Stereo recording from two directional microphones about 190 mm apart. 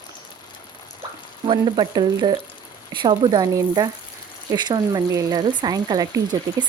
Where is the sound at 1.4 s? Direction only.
25° right (ahead or behind).